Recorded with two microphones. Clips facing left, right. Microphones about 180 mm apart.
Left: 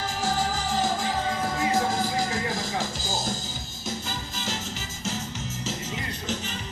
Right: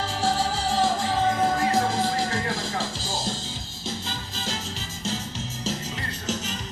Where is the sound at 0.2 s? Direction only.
30° right (ahead or behind).